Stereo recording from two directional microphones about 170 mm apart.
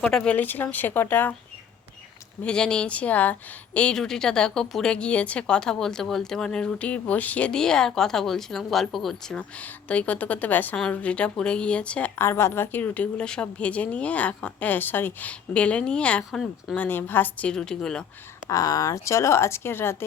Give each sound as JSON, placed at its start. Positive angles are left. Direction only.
{"t": 0.0, "sound": "speech", "side_deg": 5}
{"t": 2.4, "sound": "speech", "side_deg": 5}
{"t": 18.4, "sound": "speech", "side_deg": 20}